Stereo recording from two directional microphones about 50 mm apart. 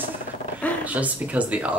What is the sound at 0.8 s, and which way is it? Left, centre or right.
Speech, right.